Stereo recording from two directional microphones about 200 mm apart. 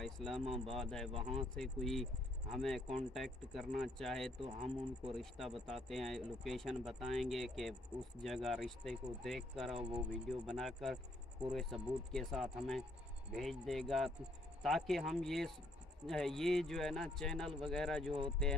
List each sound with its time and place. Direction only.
0.0 s speech: centre (ahead or behind)
1.1 s speech: 25° right (ahead or behind)
1.6 s speech: centre (ahead or behind)
4.4 s speech: 30° right (ahead or behind)
5.1 s speech: centre (ahead or behind)